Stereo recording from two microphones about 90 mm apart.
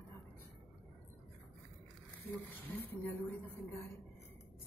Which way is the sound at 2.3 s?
20° left (ahead or behind).